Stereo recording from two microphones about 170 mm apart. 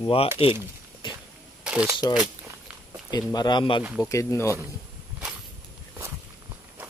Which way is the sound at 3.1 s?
25° left (ahead or behind).